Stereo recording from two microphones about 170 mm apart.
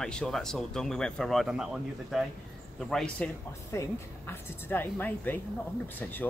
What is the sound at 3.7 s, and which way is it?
Speech, 15° left (ahead or behind).